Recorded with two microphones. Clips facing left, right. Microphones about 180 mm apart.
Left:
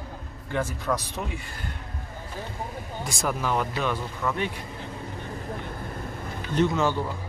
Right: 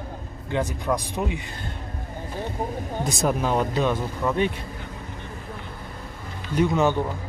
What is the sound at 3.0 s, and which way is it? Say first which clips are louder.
Speech: right 4 dB; 20° right (ahead or behind).